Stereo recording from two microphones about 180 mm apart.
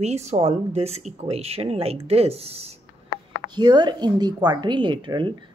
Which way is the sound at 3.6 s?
25° right (ahead or behind).